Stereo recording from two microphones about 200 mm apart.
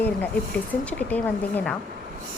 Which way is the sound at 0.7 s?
5° left (ahead or behind).